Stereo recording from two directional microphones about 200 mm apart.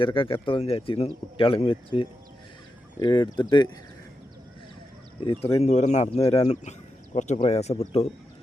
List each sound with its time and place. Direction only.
0.0 s speech: 25° left (ahead or behind)
5.2 s speech: 25° left (ahead or behind)